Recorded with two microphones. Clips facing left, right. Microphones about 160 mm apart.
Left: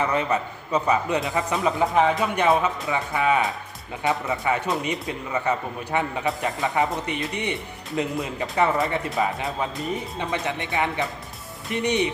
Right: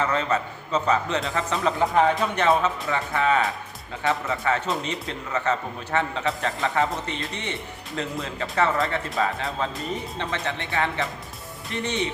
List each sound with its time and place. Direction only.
0.0 s a man's voice: 15° left (ahead or behind)
1.2 s a man's voice: centre (ahead or behind)